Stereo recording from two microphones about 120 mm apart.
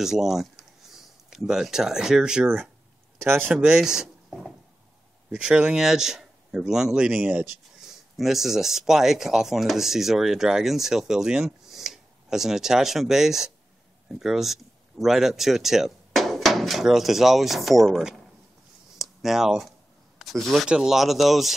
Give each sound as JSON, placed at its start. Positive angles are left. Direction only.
{"t": 0.0, "sound": "speech", "side_deg": -5}
{"t": 3.2, "sound": "speech", "side_deg": -20}
{"t": 3.5, "sound": "speech", "side_deg": -5}